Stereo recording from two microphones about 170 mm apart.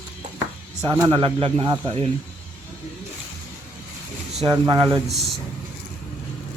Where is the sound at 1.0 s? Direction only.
30° right (ahead or behind).